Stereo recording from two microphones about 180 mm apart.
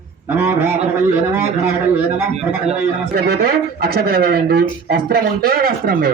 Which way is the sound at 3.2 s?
60° right (ahead or behind).